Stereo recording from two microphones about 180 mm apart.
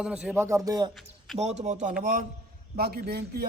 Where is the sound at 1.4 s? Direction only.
40° right (ahead or behind).